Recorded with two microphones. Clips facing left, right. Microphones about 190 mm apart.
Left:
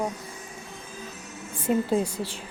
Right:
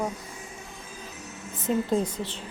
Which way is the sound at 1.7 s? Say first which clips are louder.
Left 1 dB; 10° left (ahead or behind).